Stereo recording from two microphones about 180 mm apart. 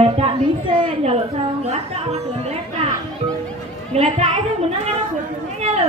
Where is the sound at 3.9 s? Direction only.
35° right (ahead or behind).